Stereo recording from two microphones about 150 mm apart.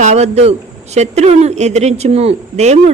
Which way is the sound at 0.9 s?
45° right (ahead or behind).